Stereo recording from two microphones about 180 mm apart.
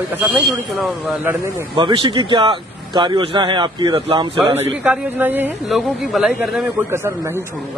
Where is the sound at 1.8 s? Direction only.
25° right (ahead or behind).